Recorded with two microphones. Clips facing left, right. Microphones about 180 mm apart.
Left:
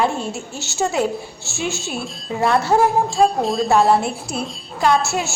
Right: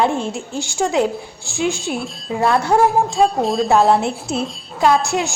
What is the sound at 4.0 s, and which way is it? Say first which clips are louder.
Speech: right 3 dB; 25° right (ahead or behind).